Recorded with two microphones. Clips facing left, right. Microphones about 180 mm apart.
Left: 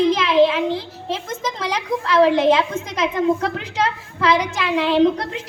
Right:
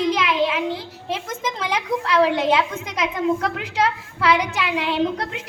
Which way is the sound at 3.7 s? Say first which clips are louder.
Even; 10° right (ahead or behind).